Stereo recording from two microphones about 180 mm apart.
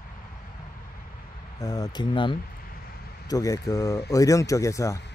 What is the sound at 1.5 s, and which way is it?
Speech, 20° left (ahead or behind).